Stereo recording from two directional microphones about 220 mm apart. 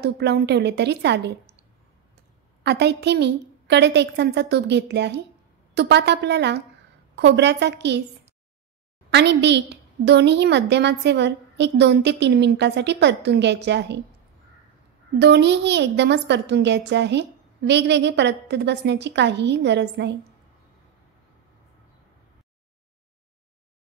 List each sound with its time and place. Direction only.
0.0 s a woman's voice: 50° right (ahead or behind)
2.6 s a woman's voice: 50° right (ahead or behind)
9.1 s a woman's voice: 50° right (ahead or behind)
15.1 s a woman's voice: 50° right (ahead or behind)